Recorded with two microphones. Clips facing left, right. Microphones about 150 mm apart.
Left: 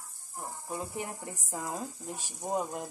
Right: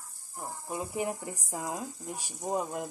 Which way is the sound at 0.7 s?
20° right (ahead or behind).